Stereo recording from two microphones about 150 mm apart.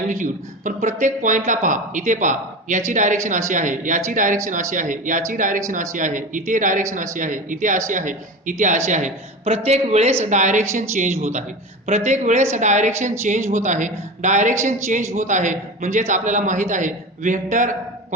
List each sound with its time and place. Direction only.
0.1 s a man's voice: 55° right (ahead or behind)